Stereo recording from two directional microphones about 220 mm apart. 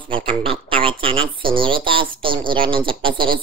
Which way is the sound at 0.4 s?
25° right (ahead or behind).